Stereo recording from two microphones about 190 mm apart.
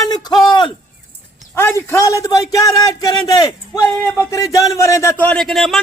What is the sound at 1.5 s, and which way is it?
Speech, 10° left (ahead or behind).